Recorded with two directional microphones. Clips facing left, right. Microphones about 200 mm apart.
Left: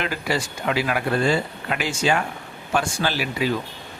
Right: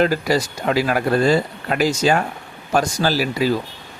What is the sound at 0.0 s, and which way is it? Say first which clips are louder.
Speech: right 8 dB; 40° right (ahead or behind).